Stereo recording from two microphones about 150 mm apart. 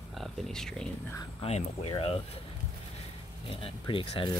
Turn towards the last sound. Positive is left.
turn(degrees=35)  # may be behind; listen again after turning